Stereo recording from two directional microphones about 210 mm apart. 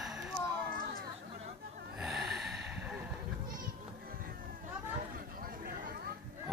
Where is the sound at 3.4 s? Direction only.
45° right (ahead or behind).